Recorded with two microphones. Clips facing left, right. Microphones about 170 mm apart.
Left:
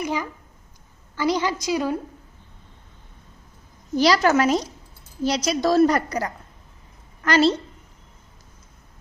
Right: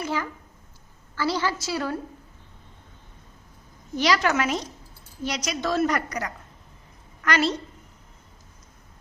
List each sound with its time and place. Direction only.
0.0 s a woman's voice: 15° left (ahead or behind)
3.9 s a woman's voice: 35° left (ahead or behind)